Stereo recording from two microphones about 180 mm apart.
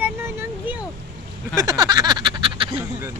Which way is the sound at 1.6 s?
20° right (ahead or behind).